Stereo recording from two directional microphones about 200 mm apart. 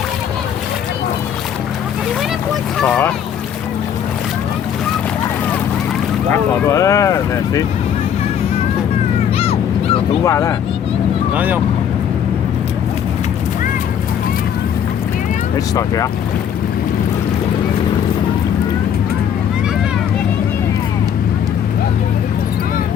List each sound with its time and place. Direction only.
2.7 s speech: 5° left (ahead or behind)
6.7 s speech: 15° left (ahead or behind)
9.4 s a sound: 30° left (ahead or behind)
10.2 s speech: 15° left (ahead or behind)
11.3 s speech: 10° right (ahead or behind)